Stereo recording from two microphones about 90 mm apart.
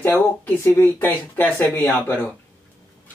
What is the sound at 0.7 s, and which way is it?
Speech, 25° left (ahead or behind).